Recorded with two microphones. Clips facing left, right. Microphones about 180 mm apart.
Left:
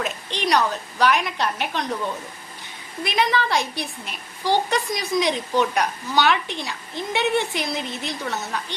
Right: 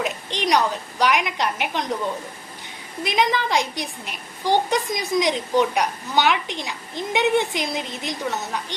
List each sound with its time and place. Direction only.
0.0 s a woman's voice: 15° right (ahead or behind)
3.0 s a woman's voice: 20° right (ahead or behind)